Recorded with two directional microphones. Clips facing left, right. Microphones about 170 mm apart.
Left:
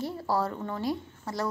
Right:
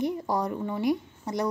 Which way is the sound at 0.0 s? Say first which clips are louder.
Right 2 dB; 15° right (ahead or behind).